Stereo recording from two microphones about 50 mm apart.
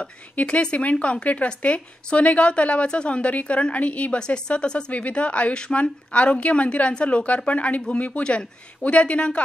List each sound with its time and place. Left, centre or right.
0.0 s speech: left